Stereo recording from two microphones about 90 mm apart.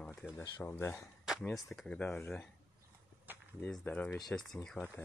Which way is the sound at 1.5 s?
5° left (ahead or behind).